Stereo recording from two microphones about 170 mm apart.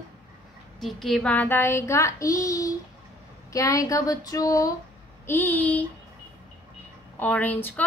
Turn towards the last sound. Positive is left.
turn(degrees=10)  # may be behind; listen again after turning